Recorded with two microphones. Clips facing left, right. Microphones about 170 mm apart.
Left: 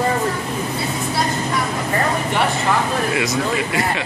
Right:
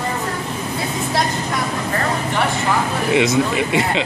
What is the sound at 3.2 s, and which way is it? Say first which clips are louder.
Speech: right 4 dB; 20° right (ahead or behind).